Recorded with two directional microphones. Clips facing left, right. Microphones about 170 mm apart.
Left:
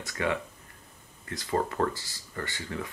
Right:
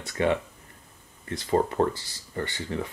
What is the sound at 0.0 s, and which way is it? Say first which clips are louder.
Speech: right 5 dB; 25° right (ahead or behind).